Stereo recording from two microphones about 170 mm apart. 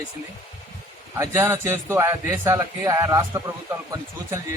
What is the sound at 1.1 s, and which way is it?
A man's voice, 15° right (ahead or behind).